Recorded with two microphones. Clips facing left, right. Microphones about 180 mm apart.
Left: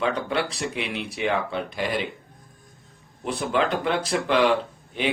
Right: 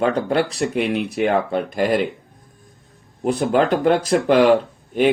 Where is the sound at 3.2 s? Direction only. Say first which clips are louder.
Right 7 dB; 45° right (ahead or behind).